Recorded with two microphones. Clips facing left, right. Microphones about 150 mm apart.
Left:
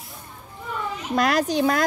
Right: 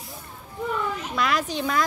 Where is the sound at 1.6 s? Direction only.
55° left (ahead or behind).